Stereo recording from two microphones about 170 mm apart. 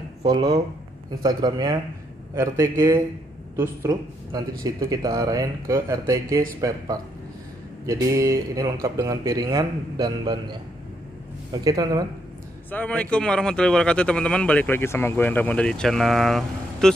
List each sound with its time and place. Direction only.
0.3 s speech: 20° right (ahead or behind)
7.8 s speech: 20° right (ahead or behind)
11.6 s speech: 20° right (ahead or behind)
12.7 s speech: 10° left (ahead or behind)